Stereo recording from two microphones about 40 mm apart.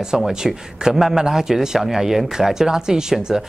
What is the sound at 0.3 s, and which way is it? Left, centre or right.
A man's voice, centre.